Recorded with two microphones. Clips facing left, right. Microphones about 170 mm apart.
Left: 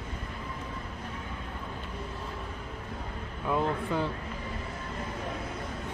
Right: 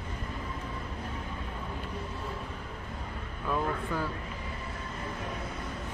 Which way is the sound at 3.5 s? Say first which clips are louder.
Left 3 dB; 20° left (ahead or behind).